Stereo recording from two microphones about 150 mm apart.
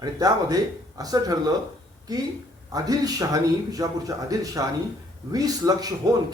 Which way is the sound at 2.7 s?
25° right (ahead or behind).